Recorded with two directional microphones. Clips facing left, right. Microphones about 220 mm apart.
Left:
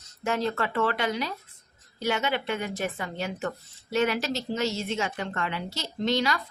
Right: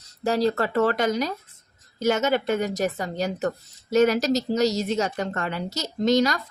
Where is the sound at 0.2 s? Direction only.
35° right (ahead or behind).